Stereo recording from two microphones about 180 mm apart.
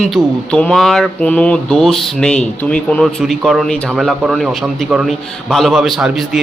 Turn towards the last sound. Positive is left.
turn(degrees=0)  # may be behind; listen again after turning